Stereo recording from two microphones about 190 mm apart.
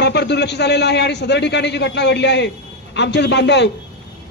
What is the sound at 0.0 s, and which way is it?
A man's voice, 60° left (ahead or behind).